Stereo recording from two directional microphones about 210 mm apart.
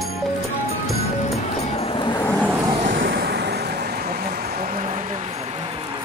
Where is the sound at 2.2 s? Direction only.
10° left (ahead or behind).